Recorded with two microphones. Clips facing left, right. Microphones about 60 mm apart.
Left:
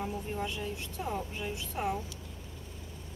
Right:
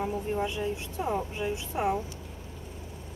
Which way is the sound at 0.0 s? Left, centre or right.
Centre.